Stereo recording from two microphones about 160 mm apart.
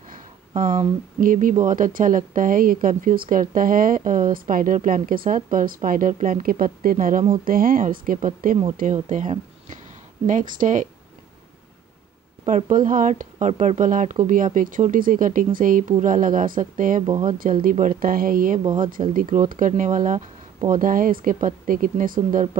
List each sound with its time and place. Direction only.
1.2 s speech: 55° right (ahead or behind)
12.4 s speech: 50° right (ahead or behind)